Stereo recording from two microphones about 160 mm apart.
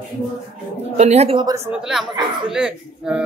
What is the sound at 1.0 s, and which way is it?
Speech, 45° right (ahead or behind).